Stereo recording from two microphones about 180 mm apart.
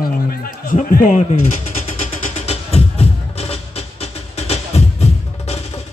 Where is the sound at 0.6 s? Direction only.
50° left (ahead or behind).